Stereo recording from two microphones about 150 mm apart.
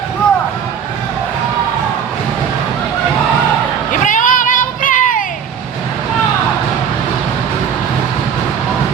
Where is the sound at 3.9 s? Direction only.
60° left (ahead or behind).